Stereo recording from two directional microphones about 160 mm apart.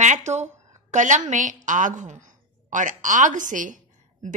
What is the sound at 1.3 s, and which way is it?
A woman's voice, 50° right (ahead or behind).